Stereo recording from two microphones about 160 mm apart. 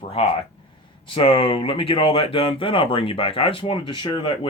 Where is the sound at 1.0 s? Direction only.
35° left (ahead or behind).